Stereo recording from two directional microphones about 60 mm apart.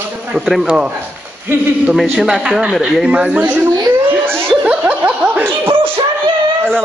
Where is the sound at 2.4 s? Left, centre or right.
Centre.